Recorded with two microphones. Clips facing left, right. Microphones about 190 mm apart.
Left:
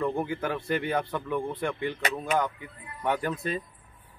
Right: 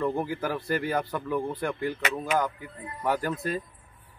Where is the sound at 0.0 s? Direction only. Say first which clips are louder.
Right 1 dB; 5° right (ahead or behind).